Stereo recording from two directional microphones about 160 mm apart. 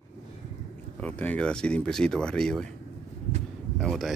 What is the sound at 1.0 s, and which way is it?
Speech, 10° left (ahead or behind).